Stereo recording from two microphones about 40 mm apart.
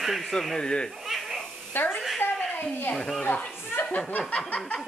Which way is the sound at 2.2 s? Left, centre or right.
Left.